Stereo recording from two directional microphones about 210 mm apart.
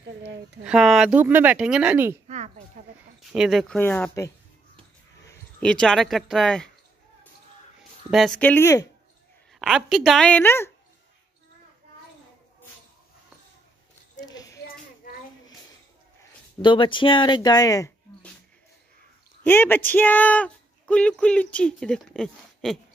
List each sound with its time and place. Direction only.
0.7 s speech: centre (ahead or behind)
2.2 s a sound: 35° right (ahead or behind)
3.2 s speech: centre (ahead or behind)
5.6 s speech: 5° left (ahead or behind)
8.1 s speech: centre (ahead or behind)
9.6 s speech: centre (ahead or behind)
14.2 s a sound: 15° left (ahead or behind)
16.6 s speech: 25° left (ahead or behind)
19.4 s speech: 10° left (ahead or behind)